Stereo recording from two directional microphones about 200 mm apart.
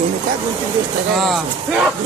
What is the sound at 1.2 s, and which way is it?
Speech, centre (ahead or behind).